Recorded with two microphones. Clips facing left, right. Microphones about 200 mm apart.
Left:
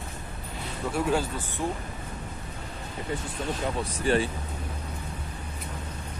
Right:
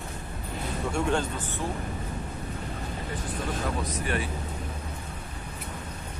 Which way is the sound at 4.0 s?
30° left (ahead or behind).